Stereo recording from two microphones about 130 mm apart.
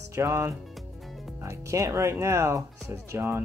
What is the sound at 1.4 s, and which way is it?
Speech, 25° right (ahead or behind).